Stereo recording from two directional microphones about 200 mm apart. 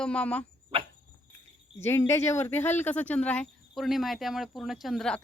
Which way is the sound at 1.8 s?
15° left (ahead or behind).